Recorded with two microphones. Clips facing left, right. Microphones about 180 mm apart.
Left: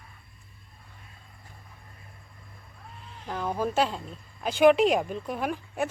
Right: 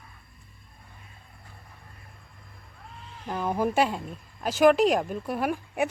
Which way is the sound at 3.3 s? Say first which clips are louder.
Right 2 dB; 10° right (ahead or behind).